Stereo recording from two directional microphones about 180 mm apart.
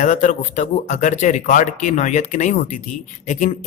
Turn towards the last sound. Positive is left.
turn(degrees=40)  # may be behind; listen again after turning